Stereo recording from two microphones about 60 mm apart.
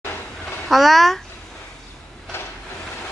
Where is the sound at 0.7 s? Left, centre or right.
Centre.